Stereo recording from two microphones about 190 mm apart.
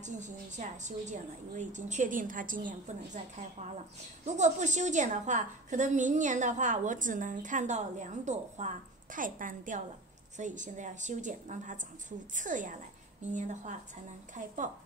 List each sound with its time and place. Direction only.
0.0 s a woman's voice: 40° right (ahead or behind)